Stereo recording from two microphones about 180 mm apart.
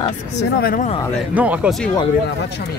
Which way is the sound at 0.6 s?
55° left (ahead or behind).